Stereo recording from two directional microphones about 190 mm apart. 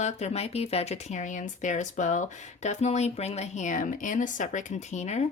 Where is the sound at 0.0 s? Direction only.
35° left (ahead or behind).